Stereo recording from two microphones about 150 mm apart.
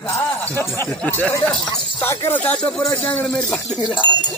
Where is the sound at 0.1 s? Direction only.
15° left (ahead or behind).